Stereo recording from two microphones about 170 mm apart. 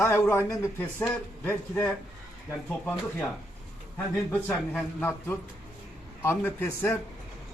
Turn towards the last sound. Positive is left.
turn(degrees=15)  # may be behind; listen again after turning